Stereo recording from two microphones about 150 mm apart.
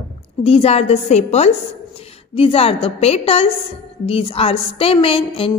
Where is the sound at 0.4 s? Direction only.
40° left (ahead or behind).